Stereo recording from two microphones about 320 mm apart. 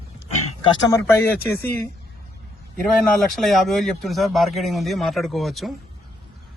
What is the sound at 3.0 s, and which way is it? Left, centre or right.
A man's voice, centre.